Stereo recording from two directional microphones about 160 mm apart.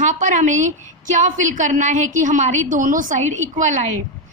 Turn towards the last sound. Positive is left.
turn(degrees=-50)  # may be behind; listen again after turning